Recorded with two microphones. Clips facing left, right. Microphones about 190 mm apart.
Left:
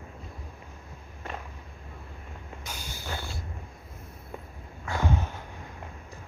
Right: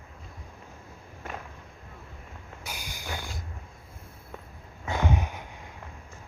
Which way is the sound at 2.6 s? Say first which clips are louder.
Right 1 dB; 10° right (ahead or behind).